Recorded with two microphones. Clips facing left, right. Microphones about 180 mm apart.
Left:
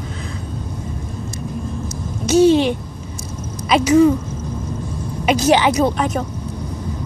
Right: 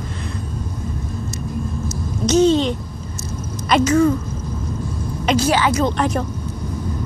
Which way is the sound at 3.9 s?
15° left (ahead or behind).